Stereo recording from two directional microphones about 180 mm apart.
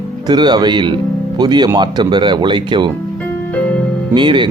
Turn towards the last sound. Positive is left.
turn(degrees=-25)  # may be behind; listen again after turning